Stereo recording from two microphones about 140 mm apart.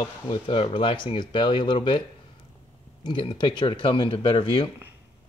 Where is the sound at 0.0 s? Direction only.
40° left (ahead or behind).